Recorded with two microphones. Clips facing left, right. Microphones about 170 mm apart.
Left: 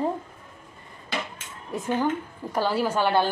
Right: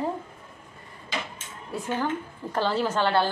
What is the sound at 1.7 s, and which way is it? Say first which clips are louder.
A woman's voice: left 3 dB; 20° left (ahead or behind).